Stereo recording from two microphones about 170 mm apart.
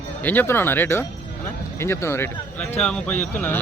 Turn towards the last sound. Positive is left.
turn(degrees=10)  # may be behind; listen again after turning